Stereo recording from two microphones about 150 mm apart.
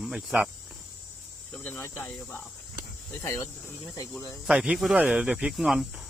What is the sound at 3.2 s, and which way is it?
Speech, 20° left (ahead or behind).